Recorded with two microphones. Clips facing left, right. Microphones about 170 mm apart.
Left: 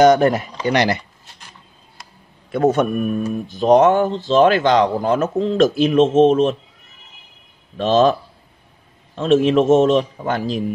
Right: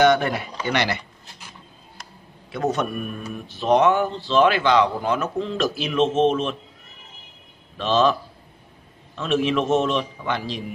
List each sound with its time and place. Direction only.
0.0 s speech: 45° left (ahead or behind)
2.5 s speech: 50° left (ahead or behind)
7.7 s speech: 45° left (ahead or behind)